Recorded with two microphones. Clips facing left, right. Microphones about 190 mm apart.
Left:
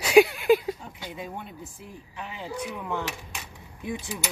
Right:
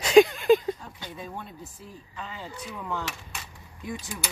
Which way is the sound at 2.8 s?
15° left (ahead or behind).